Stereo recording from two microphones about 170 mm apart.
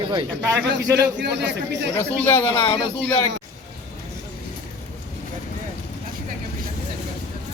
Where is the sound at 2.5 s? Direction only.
30° left (ahead or behind).